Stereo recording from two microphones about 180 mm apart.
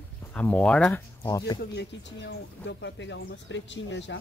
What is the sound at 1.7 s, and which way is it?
Speech, 75° left (ahead or behind).